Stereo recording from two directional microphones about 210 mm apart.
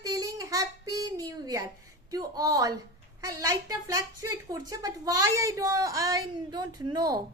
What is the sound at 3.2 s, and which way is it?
A woman's voice, 15° right (ahead or behind).